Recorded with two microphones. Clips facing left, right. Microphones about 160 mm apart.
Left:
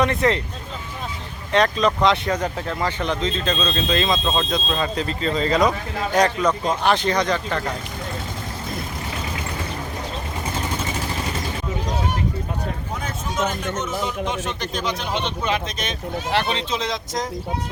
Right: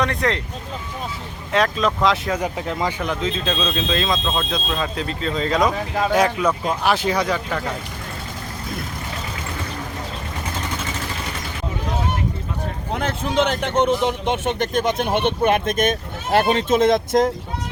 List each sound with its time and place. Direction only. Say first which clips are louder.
0.0 s speech: left 2 dB; centre (ahead or behind)
1.5 s speech: left 1 dB; centre (ahead or behind)
2.6 s speech: right 1 dB; 15° right (ahead or behind)
3.0 s speech: even; 5° right (ahead or behind)
12.9 s a man's voice: right 6 dB; 65° right (ahead or behind)